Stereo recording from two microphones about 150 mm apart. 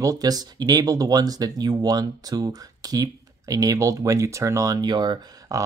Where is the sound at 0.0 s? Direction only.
25° right (ahead or behind).